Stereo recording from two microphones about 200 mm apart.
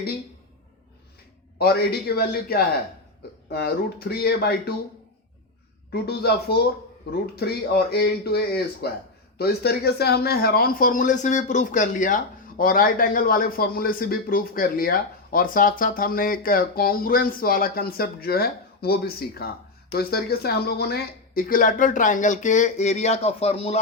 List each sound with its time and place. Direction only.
1.5 s speech: 50° left (ahead or behind)
5.9 s speech: 50° left (ahead or behind); by 23.8 s 30° left (ahead or behind)